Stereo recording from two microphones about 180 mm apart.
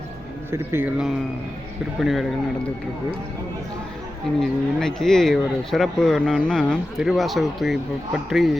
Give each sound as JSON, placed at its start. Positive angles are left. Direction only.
{"t": 0.5, "sound": "speech", "side_deg": -15}
{"t": 4.4, "sound": "speech", "side_deg": 0}